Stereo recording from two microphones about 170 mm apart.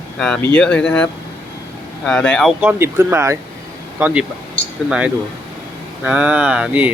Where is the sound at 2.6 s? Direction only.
10° right (ahead or behind).